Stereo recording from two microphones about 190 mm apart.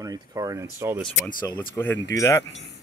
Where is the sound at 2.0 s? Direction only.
15° left (ahead or behind).